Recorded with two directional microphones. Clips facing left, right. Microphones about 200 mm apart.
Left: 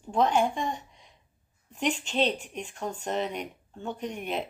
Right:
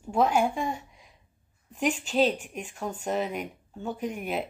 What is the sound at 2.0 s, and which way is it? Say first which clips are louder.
Speech: right 3 dB; 5° right (ahead or behind).